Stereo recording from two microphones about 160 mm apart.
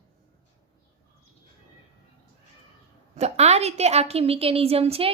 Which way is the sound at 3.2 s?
40° right (ahead or behind).